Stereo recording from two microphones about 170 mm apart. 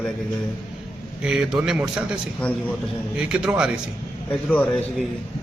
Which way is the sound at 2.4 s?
5° left (ahead or behind).